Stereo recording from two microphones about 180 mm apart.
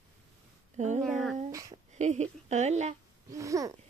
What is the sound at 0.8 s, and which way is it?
Speech, 40° right (ahead or behind).